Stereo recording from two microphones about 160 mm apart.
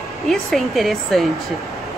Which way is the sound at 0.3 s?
Centre (ahead or behind).